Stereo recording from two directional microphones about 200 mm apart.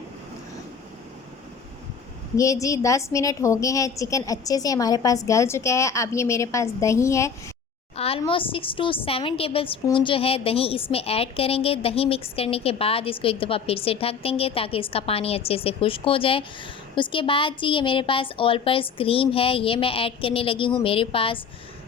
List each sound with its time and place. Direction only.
2.3 s a woman's voice: 15° left (ahead or behind)
7.9 s a woman's voice: 30° left (ahead or behind)